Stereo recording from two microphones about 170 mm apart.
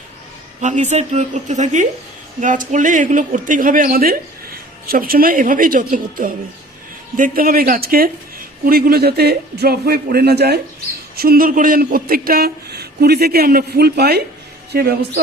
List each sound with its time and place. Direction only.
0.6 s a man's voice: 45° right (ahead or behind); by 10.6 s 70° right (ahead or behind)
11.2 s speech: 60° right (ahead or behind)